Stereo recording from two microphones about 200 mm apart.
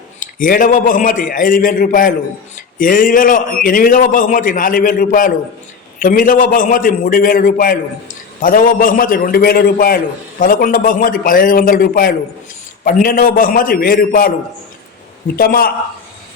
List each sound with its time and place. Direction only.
0.2 s a man's voice: 40° left (ahead or behind)
15.4 s a man's voice: 45° left (ahead or behind)